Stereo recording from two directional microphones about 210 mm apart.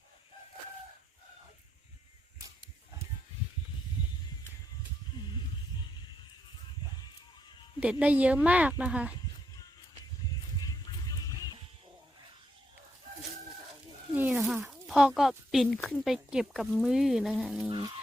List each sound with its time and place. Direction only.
7.8 s speech: 5° right (ahead or behind)
10.8 s music: 15° left (ahead or behind)
14.1 s a sound: 5° right (ahead or behind)
14.7 s speech: 5° right (ahead or behind)
17.7 s music: 20° right (ahead or behind)